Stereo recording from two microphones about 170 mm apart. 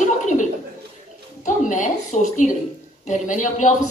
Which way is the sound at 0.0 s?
45° left (ahead or behind).